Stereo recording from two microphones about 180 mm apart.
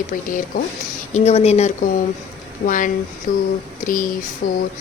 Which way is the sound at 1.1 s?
35° left (ahead or behind).